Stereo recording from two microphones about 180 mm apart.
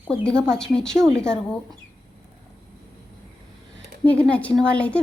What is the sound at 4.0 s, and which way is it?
A woman's voice, 5° left (ahead or behind).